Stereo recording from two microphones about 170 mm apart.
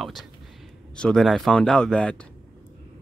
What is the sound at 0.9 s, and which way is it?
A man's voice, 5° left (ahead or behind).